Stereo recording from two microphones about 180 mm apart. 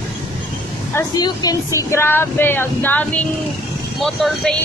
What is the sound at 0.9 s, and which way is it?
A woman's voice, 15° left (ahead or behind).